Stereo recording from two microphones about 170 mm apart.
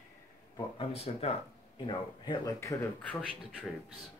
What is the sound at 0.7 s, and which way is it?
Speech, 35° left (ahead or behind).